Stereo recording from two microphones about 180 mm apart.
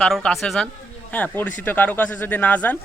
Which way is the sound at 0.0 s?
5° left (ahead or behind).